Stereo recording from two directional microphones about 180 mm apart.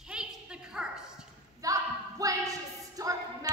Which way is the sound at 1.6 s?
20° right (ahead or behind).